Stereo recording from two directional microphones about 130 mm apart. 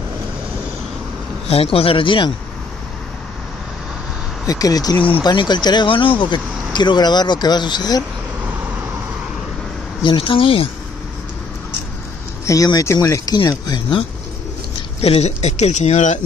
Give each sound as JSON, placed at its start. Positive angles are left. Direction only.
{"t": 1.5, "sound": "speech", "side_deg": 50}
{"t": 4.5, "sound": "speech", "side_deg": 30}
{"t": 10.0, "sound": "speech", "side_deg": 45}
{"t": 12.4, "sound": "speech", "side_deg": 25}
{"t": 15.0, "sound": "speech", "side_deg": 55}